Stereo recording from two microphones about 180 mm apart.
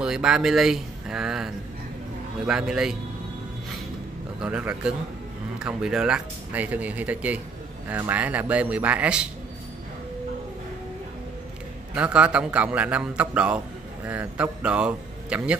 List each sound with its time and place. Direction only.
0.0 s a man's voice: 5° right (ahead or behind)
4.4 s a man's voice: 5° right (ahead or behind)
11.9 s speech: 5° right (ahead or behind)